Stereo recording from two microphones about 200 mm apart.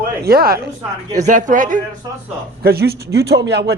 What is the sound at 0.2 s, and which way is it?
Speech, 50° right (ahead or behind).